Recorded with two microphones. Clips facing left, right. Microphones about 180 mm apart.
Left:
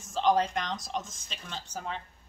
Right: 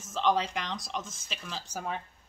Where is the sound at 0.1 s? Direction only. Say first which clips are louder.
Left 2 dB; 40° left (ahead or behind).